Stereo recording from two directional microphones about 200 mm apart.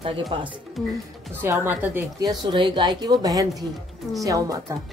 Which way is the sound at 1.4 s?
10° right (ahead or behind).